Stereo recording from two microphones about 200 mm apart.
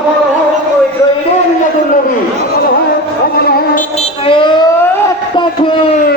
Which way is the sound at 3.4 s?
50° left (ahead or behind).